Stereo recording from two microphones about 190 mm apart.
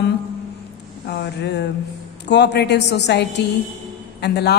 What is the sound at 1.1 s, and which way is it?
A woman's voice, 65° left (ahead or behind).